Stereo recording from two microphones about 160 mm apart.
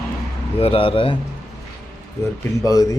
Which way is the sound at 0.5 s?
35° left (ahead or behind).